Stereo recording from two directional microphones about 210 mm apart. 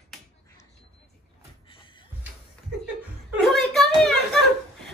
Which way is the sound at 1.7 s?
25° left (ahead or behind).